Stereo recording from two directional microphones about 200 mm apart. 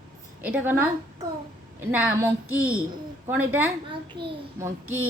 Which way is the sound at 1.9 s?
10° right (ahead or behind).